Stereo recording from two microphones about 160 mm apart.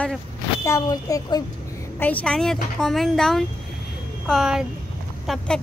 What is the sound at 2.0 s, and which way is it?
Speech, 10° left (ahead or behind).